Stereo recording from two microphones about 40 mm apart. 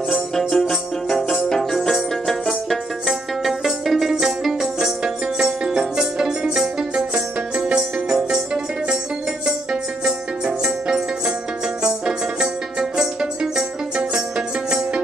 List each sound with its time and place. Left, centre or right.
0.1 s music: centre
9.5 s music: centre